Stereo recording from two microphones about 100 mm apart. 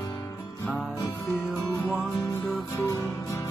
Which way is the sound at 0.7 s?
5° right (ahead or behind).